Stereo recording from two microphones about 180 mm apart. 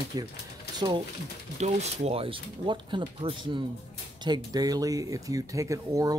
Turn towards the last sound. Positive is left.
turn(degrees=-20)  # may be behind; listen again after turning